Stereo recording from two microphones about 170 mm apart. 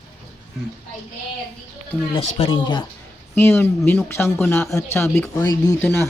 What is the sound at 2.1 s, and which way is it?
Speech, 40° left (ahead or behind).